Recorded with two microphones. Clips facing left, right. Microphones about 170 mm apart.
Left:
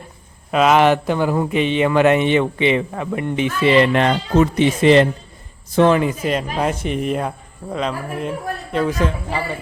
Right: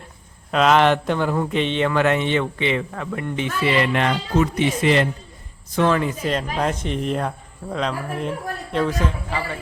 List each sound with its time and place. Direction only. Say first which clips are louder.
0.5 s a man's voice: left 2 dB; 5° left (ahead or behind)